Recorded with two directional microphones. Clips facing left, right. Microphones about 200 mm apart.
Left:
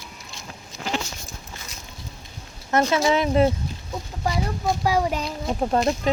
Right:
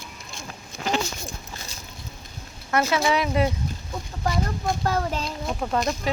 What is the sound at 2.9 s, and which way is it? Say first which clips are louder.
Speech: left 2 dB; 25° left (ahead or behind).